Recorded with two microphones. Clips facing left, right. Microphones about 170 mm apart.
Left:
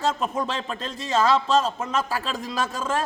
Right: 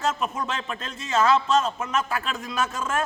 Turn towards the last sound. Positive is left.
turn(degrees=30)  # may be behind; listen again after turning